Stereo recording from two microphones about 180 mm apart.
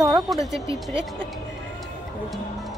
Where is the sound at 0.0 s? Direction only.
Centre (ahead or behind).